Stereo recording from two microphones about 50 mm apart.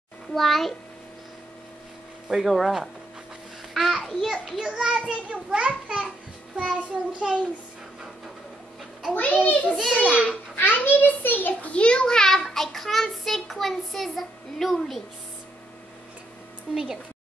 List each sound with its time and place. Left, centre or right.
0.3 s a child's voice: centre
2.2 s a child's voice: centre
4.0 s a child's voice: centre
4.6 s a child's voice: centre
9.2 s a child's voice: left
9.9 s a child's voice: right
10.8 s a child's voice: left
11.7 s a child's voice: left; by 15.0 s centre
16.7 s a child's voice: centre